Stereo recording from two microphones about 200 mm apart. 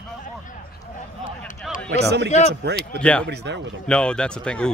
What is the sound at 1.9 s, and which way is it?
Speech, 55° right (ahead or behind).